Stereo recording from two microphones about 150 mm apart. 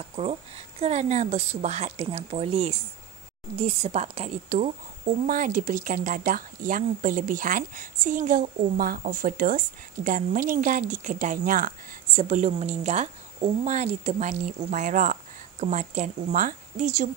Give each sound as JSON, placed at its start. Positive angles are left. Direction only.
{"t": 0.0, "sound": "a woman's voice", "side_deg": -40}
{"t": 5.3, "sound": "speech", "side_deg": -65}
{"t": 12.2, "sound": "a woman's voice", "side_deg": -55}